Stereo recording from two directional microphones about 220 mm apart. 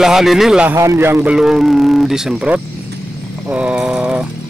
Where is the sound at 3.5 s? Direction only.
5° right (ahead or behind).